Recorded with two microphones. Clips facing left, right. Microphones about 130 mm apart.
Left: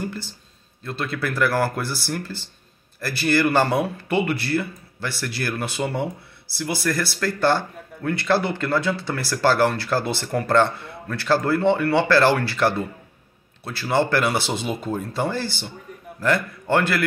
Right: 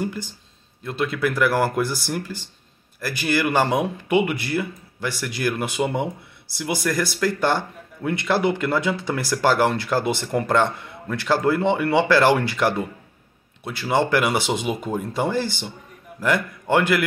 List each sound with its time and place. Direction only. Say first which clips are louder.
0.8 s speech: right 4 dB; 15° right (ahead or behind)